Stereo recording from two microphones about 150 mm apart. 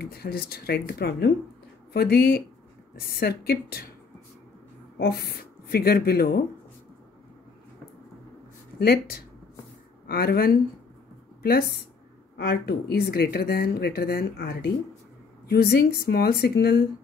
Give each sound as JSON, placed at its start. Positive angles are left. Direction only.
{"t": 0.0, "sound": "speech", "side_deg": 90}
{"t": 5.0, "sound": "speech", "side_deg": 90}
{"t": 8.7, "sound": "speech", "side_deg": 90}
{"t": 12.4, "sound": "speech", "side_deg": 90}